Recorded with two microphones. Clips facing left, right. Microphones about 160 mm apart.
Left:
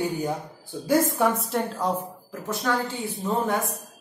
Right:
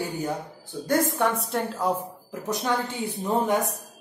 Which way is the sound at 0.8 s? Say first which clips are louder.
Left 2 dB; centre (ahead or behind).